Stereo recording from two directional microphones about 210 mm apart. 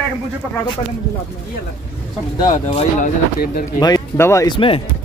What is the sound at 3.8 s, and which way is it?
Speech, 20° left (ahead or behind).